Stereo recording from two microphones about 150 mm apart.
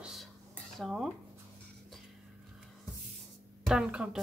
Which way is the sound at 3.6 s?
5° right (ahead or behind).